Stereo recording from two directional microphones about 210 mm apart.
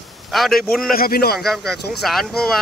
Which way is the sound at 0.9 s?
45° left (ahead or behind).